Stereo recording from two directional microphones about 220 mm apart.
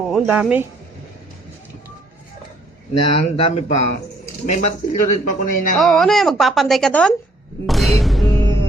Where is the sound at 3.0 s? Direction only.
25° left (ahead or behind).